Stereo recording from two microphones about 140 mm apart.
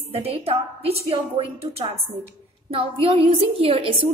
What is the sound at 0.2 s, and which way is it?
A woman's voice, 45° right (ahead or behind).